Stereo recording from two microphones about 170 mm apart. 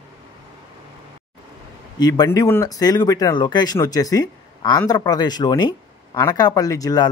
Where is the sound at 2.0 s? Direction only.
20° left (ahead or behind).